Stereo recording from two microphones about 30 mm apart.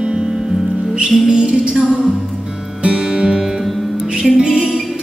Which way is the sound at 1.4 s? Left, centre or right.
Right.